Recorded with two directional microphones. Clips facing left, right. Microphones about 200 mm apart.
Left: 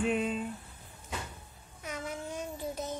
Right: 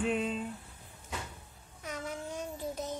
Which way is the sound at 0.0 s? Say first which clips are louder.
Left 1 dB; 10° left (ahead or behind).